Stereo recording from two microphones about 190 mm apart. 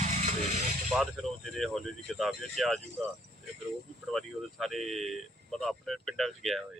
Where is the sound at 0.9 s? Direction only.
Centre (ahead or behind).